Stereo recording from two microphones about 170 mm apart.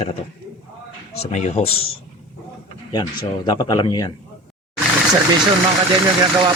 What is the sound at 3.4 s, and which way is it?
Speech, 25° left (ahead or behind).